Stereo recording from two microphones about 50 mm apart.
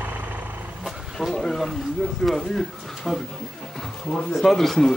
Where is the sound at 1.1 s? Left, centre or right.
Centre.